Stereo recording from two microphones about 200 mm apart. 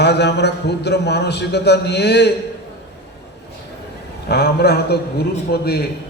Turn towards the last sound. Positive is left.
turn(degrees=50)  # may be behind; listen again after turning